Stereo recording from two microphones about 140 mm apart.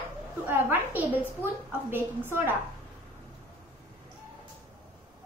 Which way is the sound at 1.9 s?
15° right (ahead or behind).